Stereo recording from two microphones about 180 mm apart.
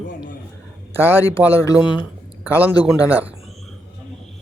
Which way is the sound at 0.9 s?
10° right (ahead or behind).